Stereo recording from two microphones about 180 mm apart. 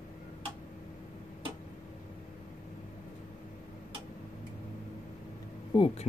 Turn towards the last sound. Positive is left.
turn(degrees=30)  # may be behind; listen again after turning